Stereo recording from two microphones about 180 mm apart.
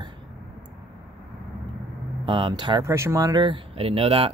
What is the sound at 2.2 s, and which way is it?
Speech, 25° right (ahead or behind).